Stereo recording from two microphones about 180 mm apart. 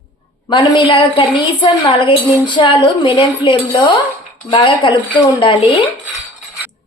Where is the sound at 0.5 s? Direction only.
30° left (ahead or behind).